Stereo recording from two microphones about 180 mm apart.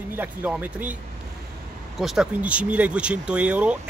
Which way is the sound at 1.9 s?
Centre (ahead or behind).